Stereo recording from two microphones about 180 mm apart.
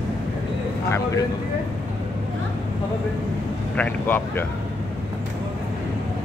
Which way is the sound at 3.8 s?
10° left (ahead or behind).